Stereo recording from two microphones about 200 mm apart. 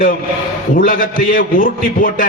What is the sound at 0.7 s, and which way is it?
A man's voice, 45° left (ahead or behind).